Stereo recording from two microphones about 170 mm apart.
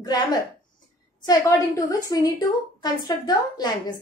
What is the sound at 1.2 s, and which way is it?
A woman's voice, 20° left (ahead or behind).